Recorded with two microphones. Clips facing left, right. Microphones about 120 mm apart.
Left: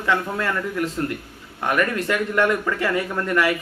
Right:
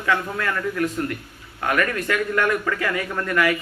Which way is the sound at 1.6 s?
15° left (ahead or behind).